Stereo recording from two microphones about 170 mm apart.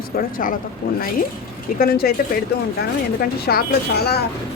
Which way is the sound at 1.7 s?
65° left (ahead or behind).